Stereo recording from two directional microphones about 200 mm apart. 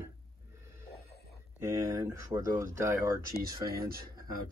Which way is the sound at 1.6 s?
15° right (ahead or behind).